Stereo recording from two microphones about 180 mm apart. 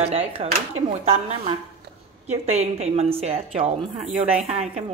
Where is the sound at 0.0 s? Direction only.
35° right (ahead or behind).